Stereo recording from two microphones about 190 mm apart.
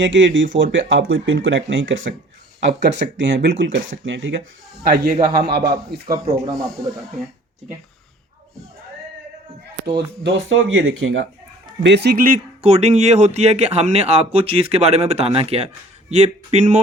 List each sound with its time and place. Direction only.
0.0 s speech: 75° right (ahead or behind)
2.6 s speech: 70° right (ahead or behind)
4.8 s a man's voice: 55° right (ahead or behind)
6.5 s speech: centre (ahead or behind)
9.9 s speech: 70° right (ahead or behind)
11.8 s speech: 65° right (ahead or behind); by 16.8 s 35° right (ahead or behind)